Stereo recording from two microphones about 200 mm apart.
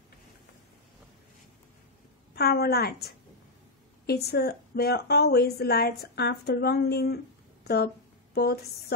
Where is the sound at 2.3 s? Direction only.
50° left (ahead or behind).